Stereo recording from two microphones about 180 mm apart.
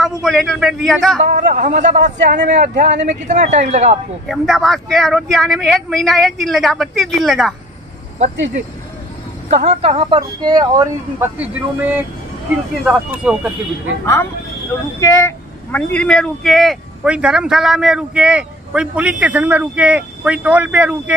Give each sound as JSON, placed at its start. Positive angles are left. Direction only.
{"t": 0.2, "sound": "speech", "side_deg": 0}
{"t": 1.2, "sound": "speech", "side_deg": -45}
{"t": 4.3, "sound": "speech", "side_deg": 0}
{"t": 9.5, "sound": "speech", "side_deg": -35}
{"t": 11.3, "sound": "speech", "side_deg": -10}
{"t": 15.0, "sound": "speech", "side_deg": 15}